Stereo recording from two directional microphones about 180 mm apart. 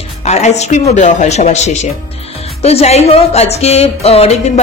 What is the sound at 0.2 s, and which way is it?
Speech, 40° left (ahead or behind).